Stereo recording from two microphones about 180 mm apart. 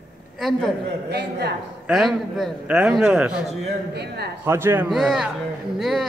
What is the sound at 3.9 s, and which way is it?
Speech, 65° right (ahead or behind).